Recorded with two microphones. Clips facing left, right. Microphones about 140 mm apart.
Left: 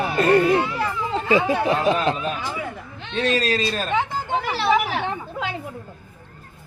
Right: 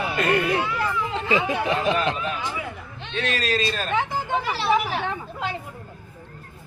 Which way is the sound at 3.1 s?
40° left (ahead or behind).